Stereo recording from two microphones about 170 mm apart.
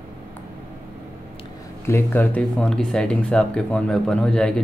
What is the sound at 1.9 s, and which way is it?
Speech, 15° left (ahead or behind).